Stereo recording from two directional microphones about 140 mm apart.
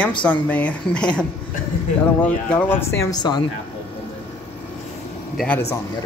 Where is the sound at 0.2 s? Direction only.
10° left (ahead or behind).